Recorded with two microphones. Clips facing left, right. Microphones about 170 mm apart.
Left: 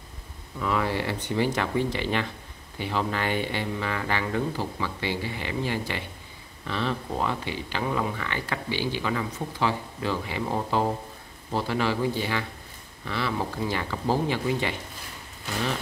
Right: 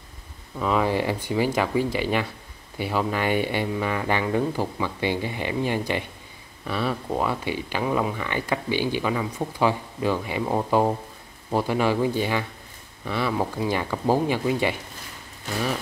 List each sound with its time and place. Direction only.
0.6 s speech: 20° right (ahead or behind)